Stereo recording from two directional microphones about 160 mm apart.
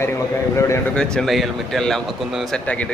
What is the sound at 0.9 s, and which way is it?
Speech, 5° left (ahead or behind).